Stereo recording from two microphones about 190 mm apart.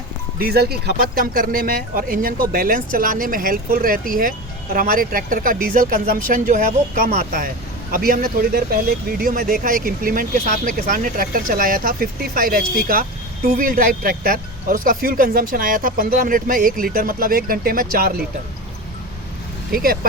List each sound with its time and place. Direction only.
0.3 s speech: 55° right (ahead or behind)
19.7 s speech: 50° right (ahead or behind)